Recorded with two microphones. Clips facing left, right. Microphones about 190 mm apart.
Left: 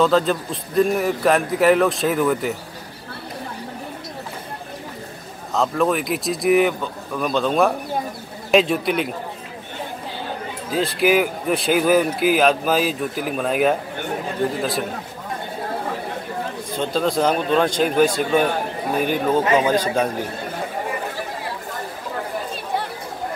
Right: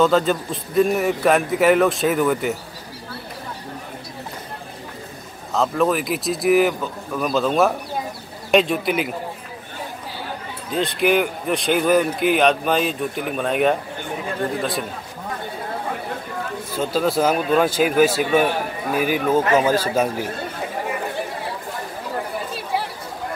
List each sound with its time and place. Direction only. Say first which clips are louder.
0.0 s a man's voice: even; centre (ahead or behind)
5.5 s a man's voice: even; centre (ahead or behind)
10.7 s a man's voice: left 1 dB; 5° left (ahead or behind)
16.7 s speech: right 1 dB; 5° right (ahead or behind)
19.4 s speech: even; 20° left (ahead or behind)
19.7 s speech: even; 5° right (ahead or behind)